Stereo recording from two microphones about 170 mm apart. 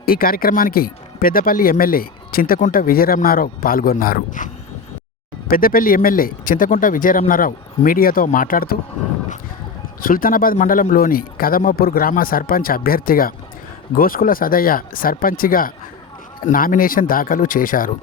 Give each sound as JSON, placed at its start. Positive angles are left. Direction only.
{"t": 0.0, "sound": "speech", "side_deg": 60}
{"t": 5.5, "sound": "speech", "side_deg": 55}
{"t": 10.0, "sound": "speech", "side_deg": 55}